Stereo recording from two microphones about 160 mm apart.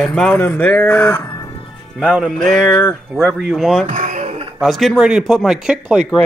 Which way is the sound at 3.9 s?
50° right (ahead or behind).